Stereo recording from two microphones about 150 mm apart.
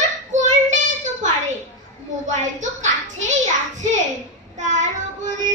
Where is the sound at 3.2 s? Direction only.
55° right (ahead or behind).